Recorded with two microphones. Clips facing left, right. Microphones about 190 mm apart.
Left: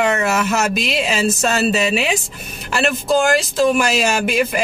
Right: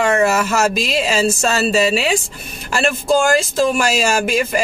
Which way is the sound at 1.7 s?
35° right (ahead or behind).